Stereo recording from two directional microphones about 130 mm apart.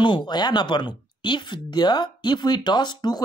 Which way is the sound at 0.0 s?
35° left (ahead or behind).